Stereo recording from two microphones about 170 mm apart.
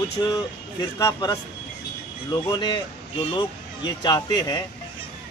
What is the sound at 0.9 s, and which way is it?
A man's voice, 20° left (ahead or behind).